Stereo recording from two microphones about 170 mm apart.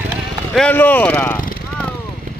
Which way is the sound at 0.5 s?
10° left (ahead or behind).